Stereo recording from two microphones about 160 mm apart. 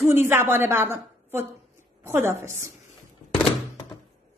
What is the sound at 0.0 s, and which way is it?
A woman's voice, 15° right (ahead or behind).